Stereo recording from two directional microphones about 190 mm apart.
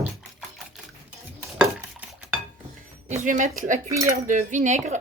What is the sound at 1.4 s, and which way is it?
Stir, 5° right (ahead or behind).